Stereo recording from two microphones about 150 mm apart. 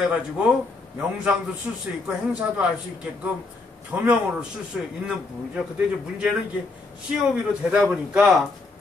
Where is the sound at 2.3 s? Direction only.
10° right (ahead or behind).